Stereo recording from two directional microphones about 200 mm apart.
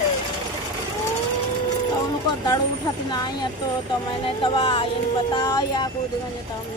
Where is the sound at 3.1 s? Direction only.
20° left (ahead or behind).